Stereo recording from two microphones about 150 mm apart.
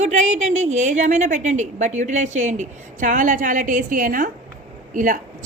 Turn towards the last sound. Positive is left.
turn(degrees=-65)  # may be behind; listen again after turning